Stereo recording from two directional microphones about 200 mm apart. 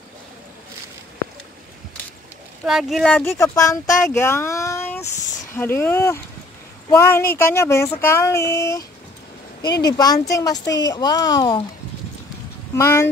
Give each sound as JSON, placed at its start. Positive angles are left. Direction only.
{"t": 2.6, "sound": "speech", "side_deg": 0}
{"t": 9.8, "sound": "speech", "side_deg": 20}
{"t": 12.7, "sound": "speech", "side_deg": 15}